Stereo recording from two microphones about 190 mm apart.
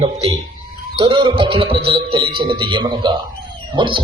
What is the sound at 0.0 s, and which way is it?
A man's voice, 30° right (ahead or behind).